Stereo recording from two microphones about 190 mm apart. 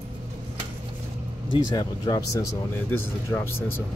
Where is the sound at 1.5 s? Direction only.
20° left (ahead or behind).